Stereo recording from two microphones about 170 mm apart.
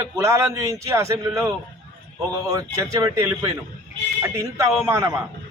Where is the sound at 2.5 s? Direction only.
20° right (ahead or behind).